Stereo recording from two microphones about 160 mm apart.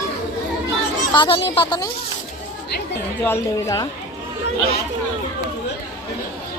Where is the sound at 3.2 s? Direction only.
20° left (ahead or behind).